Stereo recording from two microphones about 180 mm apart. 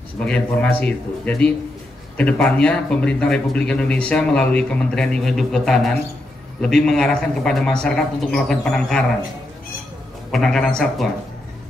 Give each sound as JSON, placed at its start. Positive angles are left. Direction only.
{"t": 0.2, "sound": "speech", "side_deg": 5}
{"t": 10.3, "sound": "speech", "side_deg": 0}